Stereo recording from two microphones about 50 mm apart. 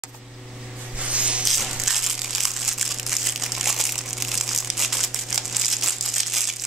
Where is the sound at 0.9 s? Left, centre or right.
Right.